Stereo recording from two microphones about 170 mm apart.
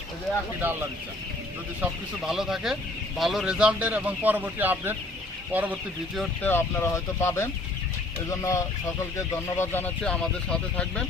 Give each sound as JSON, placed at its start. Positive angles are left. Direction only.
{"t": 0.6, "sound": "speech", "side_deg": -10}
{"t": 6.1, "sound": "speech", "side_deg": 10}